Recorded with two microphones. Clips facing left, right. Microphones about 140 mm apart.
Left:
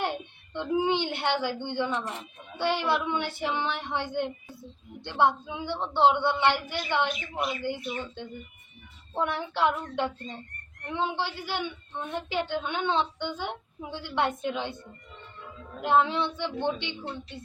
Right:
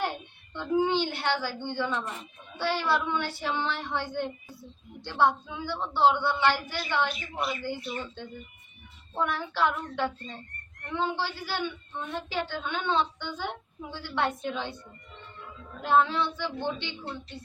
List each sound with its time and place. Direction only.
0.5 s a woman's voice: 20° left (ahead or behind)
15.8 s a woman's voice: 20° left (ahead or behind)